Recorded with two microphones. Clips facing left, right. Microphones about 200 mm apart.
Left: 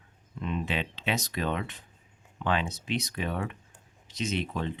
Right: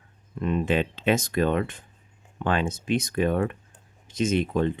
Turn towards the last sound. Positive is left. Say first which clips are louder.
# right 8 dB
turn(degrees=-45)  # may be behind; listen again after turning